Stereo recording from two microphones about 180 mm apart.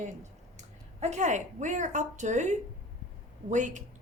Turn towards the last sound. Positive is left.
turn(degrees=-40)  # may be behind; listen again after turning